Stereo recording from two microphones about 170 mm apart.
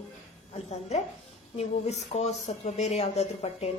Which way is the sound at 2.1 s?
40° left (ahead or behind).